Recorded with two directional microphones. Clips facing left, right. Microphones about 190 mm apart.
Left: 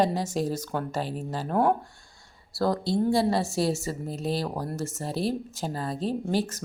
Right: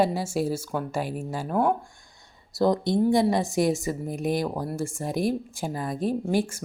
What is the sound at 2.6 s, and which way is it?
A woman's voice, 20° right (ahead or behind).